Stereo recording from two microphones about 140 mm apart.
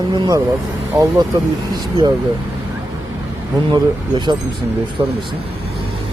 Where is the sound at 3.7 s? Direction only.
30° right (ahead or behind).